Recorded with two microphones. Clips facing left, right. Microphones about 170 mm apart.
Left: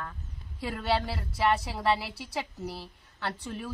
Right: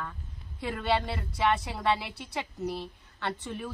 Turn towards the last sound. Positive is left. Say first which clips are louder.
# right 1 dB
turn(degrees=0)  # may be behind; listen again after turning